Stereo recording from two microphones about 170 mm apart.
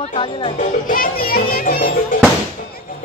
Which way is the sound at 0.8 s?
60° left (ahead or behind).